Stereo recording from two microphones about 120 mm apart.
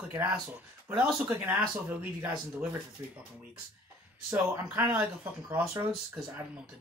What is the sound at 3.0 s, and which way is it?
Speech, 20° right (ahead or behind).